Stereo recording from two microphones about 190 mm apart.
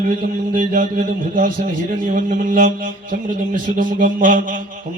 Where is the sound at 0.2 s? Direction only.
45° right (ahead or behind).